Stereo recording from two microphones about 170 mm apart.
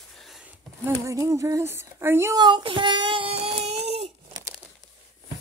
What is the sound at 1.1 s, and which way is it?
Speech, 20° right (ahead or behind).